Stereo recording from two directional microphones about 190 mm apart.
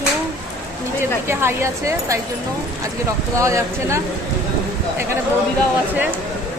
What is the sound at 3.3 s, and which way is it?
Speech, 15° right (ahead or behind).